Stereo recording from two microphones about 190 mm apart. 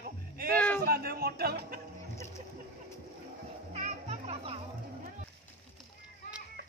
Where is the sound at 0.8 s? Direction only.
50° right (ahead or behind).